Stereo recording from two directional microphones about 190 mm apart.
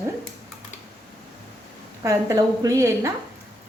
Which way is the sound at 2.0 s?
15° right (ahead or behind).